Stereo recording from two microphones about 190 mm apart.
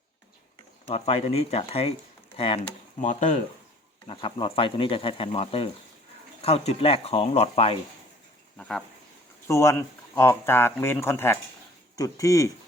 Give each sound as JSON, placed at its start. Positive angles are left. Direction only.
{"t": 0.9, "sound": "speech", "side_deg": 30}
{"t": 3.0, "sound": "speech", "side_deg": 40}
{"t": 4.0, "sound": "speech", "side_deg": 30}
{"t": 8.5, "sound": "speech", "side_deg": 5}